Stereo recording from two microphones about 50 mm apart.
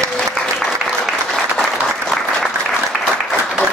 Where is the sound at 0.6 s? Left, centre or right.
Centre.